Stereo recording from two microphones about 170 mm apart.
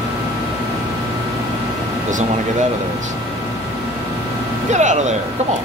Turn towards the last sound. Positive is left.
turn(degrees=-45)  # may be behind; listen again after turning